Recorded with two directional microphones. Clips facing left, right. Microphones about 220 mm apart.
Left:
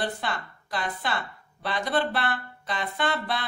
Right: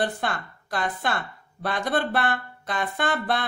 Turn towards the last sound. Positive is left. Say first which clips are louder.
# right 3 dB
turn(degrees=-50)  # may be behind; listen again after turning